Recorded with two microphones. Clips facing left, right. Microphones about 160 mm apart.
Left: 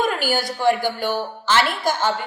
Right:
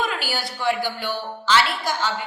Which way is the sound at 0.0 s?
45° left (ahead or behind).